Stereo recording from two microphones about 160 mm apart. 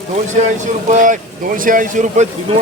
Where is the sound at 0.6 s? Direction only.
50° right (ahead or behind).